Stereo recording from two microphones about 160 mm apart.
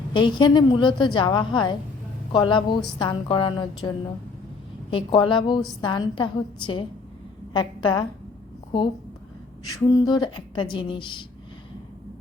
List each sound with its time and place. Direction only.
0.1 s a woman's voice: 30° left (ahead or behind)
9.7 s a woman's voice: 25° left (ahead or behind)